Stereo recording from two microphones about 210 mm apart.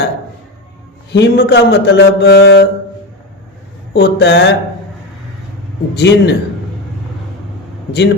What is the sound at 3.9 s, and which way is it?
Speech, 55° left (ahead or behind).